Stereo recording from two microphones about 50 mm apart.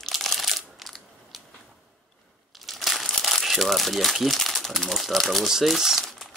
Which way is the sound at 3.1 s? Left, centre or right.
Centre.